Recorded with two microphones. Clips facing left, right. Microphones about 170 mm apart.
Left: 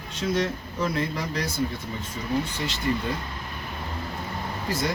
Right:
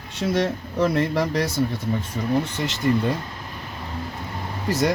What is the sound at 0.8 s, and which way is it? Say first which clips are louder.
Speech: right 7 dB; 70° right (ahead or behind).